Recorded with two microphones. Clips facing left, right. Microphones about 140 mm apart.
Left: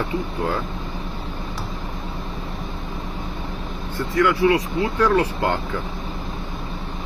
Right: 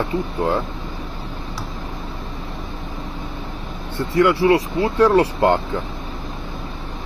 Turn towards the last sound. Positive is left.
turn(degrees=-30)  # may be behind; listen again after turning